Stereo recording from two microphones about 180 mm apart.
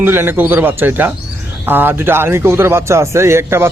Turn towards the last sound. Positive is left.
turn(degrees=-15)  # may be behind; listen again after turning